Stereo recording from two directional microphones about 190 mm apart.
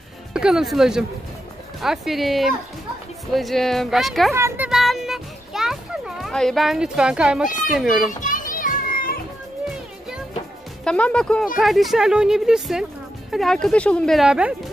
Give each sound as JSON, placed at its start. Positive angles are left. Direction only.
{"t": 0.3, "sound": "speech", "side_deg": -5}
{"t": 4.3, "sound": "speech", "side_deg": -15}
{"t": 4.6, "sound": "music", "side_deg": 0}
{"t": 7.6, "sound": "speech", "side_deg": 0}
{"t": 8.2, "sound": "children playing", "side_deg": 45}
{"t": 10.8, "sound": "speech", "side_deg": 5}